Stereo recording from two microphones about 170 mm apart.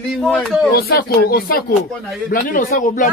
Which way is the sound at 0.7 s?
65° left (ahead or behind).